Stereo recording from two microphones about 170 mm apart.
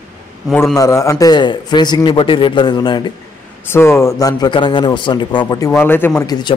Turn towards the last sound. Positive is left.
turn(degrees=15)  # may be behind; listen again after turning